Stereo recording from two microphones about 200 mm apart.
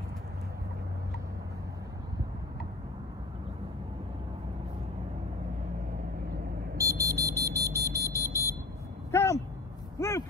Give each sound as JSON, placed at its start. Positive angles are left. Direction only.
{"t": 6.8, "sound": "smoke detector", "side_deg": -15}
{"t": 8.2, "sound": "smoke detector", "side_deg": 15}
{"t": 9.1, "sound": "a sound", "side_deg": 15}